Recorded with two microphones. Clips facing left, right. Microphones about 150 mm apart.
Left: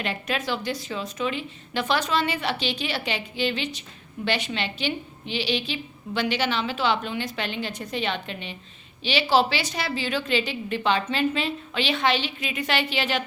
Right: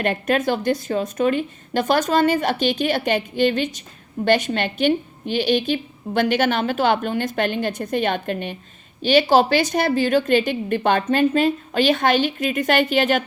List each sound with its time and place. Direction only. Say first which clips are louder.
0.0 s a woman's voice: right 8 dB; 50° right (ahead or behind)